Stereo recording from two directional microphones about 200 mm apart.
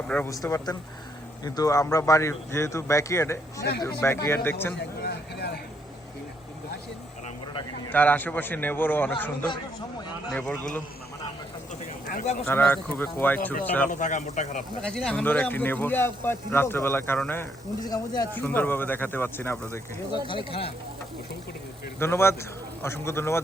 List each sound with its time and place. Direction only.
0.1 s speech: 10° left (ahead or behind)
5.0 s vehicle: 55° left (ahead or behind)
7.9 s speech: 10° left (ahead or behind)
12.0 s speech: 35° left (ahead or behind)
12.5 s speech: 10° left (ahead or behind)
13.8 s a man's voice: 40° left (ahead or behind)
14.8 s speech: 5° left (ahead or behind)
18.3 s speech: 10° left (ahead or behind)
20.2 s speech: 25° left (ahead or behind)
21.9 s speech: 10° left (ahead or behind)